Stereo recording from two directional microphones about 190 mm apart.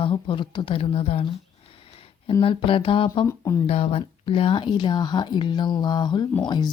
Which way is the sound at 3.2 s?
15° left (ahead or behind).